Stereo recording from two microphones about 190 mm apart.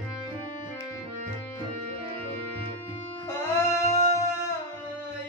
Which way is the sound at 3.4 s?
15° left (ahead or behind).